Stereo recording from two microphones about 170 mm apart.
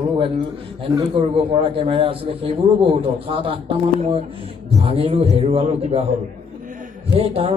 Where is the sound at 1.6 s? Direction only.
30° right (ahead or behind).